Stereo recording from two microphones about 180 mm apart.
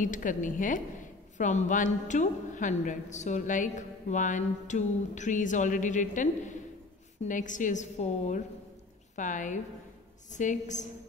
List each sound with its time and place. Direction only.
0.0 s a woman's voice: 45° left (ahead or behind)
7.2 s a woman's voice: 45° left (ahead or behind)